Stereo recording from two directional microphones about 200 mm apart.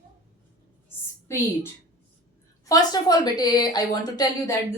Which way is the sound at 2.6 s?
20° left (ahead or behind).